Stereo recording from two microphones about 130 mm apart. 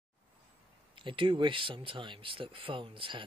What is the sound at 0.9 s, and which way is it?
Speech, 40° right (ahead or behind).